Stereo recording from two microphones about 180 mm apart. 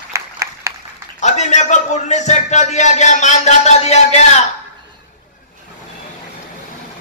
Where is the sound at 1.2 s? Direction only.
40° left (ahead or behind).